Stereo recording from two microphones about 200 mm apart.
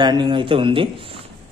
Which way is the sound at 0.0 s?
20° right (ahead or behind).